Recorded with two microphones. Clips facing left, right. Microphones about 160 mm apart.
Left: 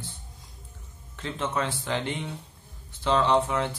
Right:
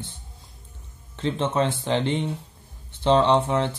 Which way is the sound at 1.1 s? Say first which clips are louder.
Right 6 dB; 25° right (ahead or behind).